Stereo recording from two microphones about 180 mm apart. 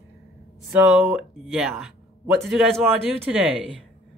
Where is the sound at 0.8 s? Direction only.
5° right (ahead or behind).